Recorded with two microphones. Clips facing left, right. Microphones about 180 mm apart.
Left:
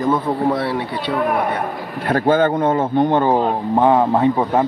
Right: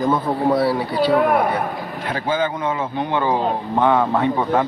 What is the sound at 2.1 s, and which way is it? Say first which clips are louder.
Speech: left 7 dB; 55° left (ahead or behind).